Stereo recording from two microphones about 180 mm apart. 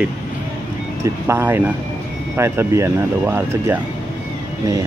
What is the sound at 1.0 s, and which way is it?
Speech, 15° right (ahead or behind).